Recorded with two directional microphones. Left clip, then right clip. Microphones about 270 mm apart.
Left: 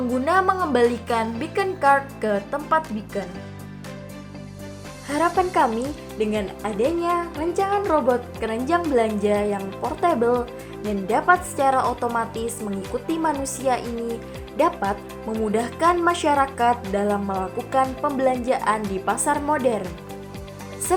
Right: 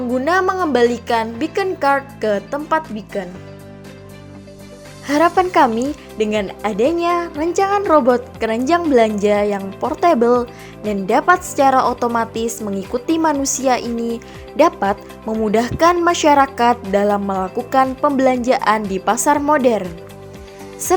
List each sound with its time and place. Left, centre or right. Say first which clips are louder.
0.3 s a woman's voice: right 3 dB; right
5.0 s a woman's voice: right 7 dB; right